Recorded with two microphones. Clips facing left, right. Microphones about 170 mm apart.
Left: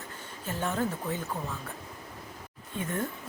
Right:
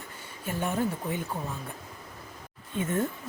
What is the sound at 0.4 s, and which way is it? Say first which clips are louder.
Speech: right 2 dB; 15° right (ahead or behind).